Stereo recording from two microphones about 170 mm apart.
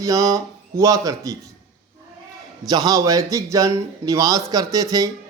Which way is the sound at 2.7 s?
20° right (ahead or behind).